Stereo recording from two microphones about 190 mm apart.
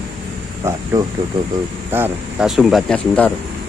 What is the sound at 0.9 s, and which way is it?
Speech, 20° right (ahead or behind).